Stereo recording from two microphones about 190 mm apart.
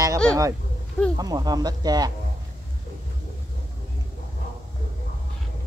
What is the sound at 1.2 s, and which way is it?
Speech, 20° right (ahead or behind).